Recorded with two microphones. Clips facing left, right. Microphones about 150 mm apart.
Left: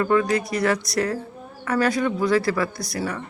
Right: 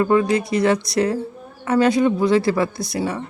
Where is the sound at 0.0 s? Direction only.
25° right (ahead or behind).